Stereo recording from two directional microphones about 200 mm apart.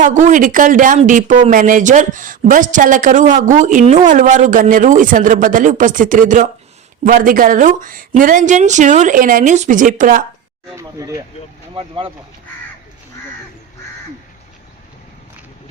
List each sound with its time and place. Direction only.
0.0 s speech: 40° right (ahead or behind)
10.8 s speech: 15° right (ahead or behind)